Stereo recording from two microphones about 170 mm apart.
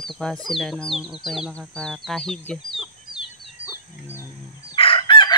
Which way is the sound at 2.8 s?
5° right (ahead or behind).